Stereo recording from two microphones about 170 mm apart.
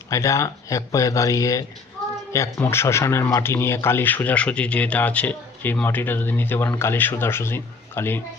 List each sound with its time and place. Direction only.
0.1 s speech: 15° left (ahead or behind)